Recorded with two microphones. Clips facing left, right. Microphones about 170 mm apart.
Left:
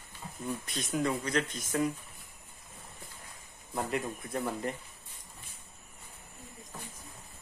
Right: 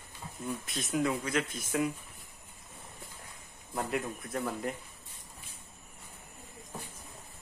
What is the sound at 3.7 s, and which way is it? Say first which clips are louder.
Snicker: even; centre (ahead or behind).